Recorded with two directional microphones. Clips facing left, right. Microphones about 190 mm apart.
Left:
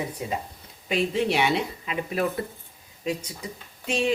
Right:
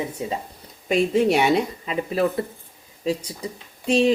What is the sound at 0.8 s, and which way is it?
Speech, 45° right (ahead or behind).